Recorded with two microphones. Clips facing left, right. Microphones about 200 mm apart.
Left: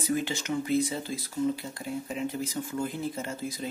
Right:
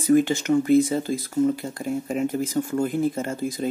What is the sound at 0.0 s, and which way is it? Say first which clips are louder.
Speech: right 11 dB; 50° right (ahead or behind).